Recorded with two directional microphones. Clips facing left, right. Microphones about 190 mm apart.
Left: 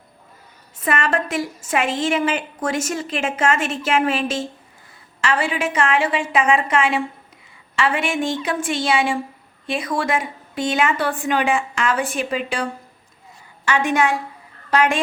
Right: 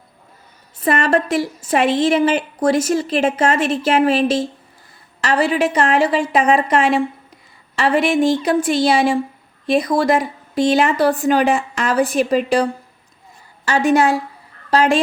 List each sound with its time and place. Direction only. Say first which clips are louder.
0.8 s a woman's voice: right 5 dB; 35° right (ahead or behind)
13.7 s a woman's voice: right 4 dB; 35° right (ahead or behind)